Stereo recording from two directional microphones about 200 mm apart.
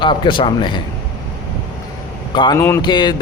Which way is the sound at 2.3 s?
25° left (ahead or behind).